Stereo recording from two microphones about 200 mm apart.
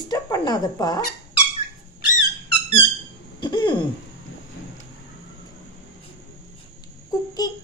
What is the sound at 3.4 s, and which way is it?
Throat clearing, 25° left (ahead or behind).